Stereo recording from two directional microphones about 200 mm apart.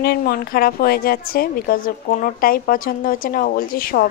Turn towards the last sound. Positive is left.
turn(degrees=45)  # may be behind; listen again after turning